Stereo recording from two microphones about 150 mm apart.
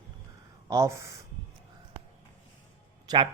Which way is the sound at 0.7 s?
20° right (ahead or behind).